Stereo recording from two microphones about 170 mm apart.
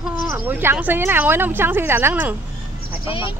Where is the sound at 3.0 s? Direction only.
30° left (ahead or behind).